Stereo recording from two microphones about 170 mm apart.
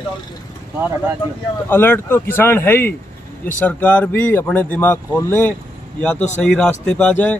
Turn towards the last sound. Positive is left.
turn(degrees=10)  # may be behind; listen again after turning